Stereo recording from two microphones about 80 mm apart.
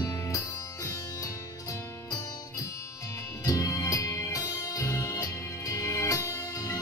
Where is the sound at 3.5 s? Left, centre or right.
Left.